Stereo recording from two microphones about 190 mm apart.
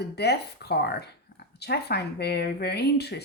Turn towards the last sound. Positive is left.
turn(degrees=60)  # may be behind; listen again after turning